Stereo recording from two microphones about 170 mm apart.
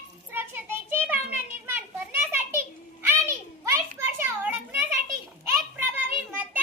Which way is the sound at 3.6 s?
15° right (ahead or behind).